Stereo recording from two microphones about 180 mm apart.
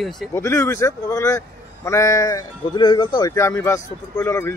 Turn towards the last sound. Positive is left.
turn(degrees=15)  # may be behind; listen again after turning